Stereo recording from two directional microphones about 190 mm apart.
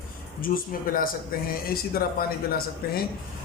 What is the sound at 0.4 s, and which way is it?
Speech, 50° left (ahead or behind).